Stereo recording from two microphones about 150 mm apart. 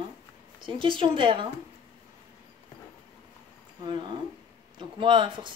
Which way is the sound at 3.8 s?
30° right (ahead or behind).